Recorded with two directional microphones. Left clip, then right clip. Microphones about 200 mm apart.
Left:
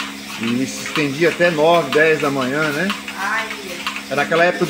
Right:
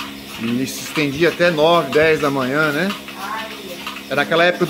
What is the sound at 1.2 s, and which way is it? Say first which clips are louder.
Speech: even; 10° right (ahead or behind).